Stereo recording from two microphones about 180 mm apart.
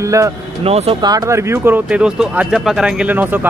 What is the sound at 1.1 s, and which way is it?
Speech, 15° right (ahead or behind).